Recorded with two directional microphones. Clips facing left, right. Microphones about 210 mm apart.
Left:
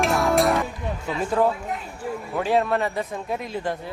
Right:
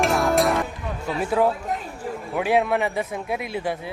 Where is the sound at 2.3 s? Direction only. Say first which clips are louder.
Right 1 dB; 10° right (ahead or behind).